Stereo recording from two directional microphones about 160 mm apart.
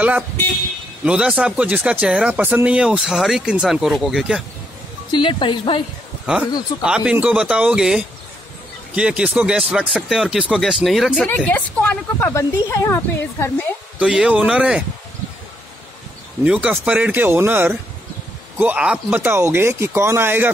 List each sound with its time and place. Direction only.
1.0 s speech: 5° right (ahead or behind)
5.1 s speech: 30° left (ahead or behind)
6.2 s speech: 5° right (ahead or behind)
11.2 s a woman's voice: 10° left (ahead or behind)
13.9 s speech: 5° right (ahead or behind)
16.4 s speech: 5° right (ahead or behind)